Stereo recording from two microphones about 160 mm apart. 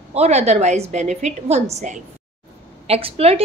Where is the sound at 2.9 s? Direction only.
35° right (ahead or behind).